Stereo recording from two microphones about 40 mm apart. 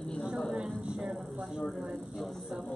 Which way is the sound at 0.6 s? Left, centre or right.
Centre.